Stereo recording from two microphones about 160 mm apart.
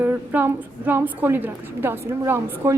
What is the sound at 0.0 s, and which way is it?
A woman's voice, 10° right (ahead or behind).